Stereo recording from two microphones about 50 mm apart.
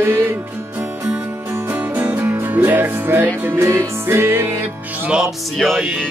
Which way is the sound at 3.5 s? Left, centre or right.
Right.